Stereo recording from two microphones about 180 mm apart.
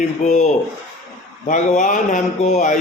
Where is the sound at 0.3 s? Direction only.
40° left (ahead or behind).